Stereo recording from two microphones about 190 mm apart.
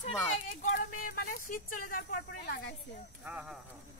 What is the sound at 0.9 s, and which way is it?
Speech, 50° left (ahead or behind).